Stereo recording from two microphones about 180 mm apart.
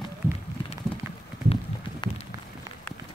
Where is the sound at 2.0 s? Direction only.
25° left (ahead or behind).